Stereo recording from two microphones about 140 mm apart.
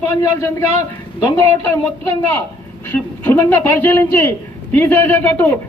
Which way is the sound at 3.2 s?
20° left (ahead or behind).